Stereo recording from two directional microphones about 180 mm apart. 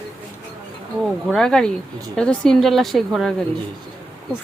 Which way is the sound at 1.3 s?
5° left (ahead or behind).